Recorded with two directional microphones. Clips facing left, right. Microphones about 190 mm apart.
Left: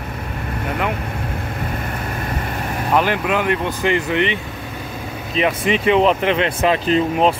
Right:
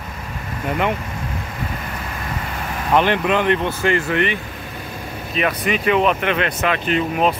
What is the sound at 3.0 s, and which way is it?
Speech, 5° left (ahead or behind).